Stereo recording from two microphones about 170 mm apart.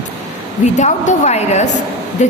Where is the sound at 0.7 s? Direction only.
45° left (ahead or behind).